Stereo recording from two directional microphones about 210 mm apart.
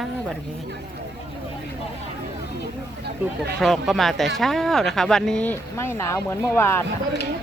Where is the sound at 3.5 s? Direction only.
Centre (ahead or behind).